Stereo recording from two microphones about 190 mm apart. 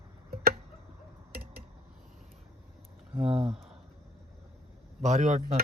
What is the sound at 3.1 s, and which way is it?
Speech, 30° right (ahead or behind).